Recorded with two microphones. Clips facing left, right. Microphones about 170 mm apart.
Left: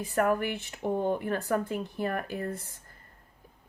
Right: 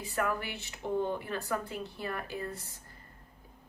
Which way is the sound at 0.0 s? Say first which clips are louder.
Left 7 dB; 50° left (ahead or behind).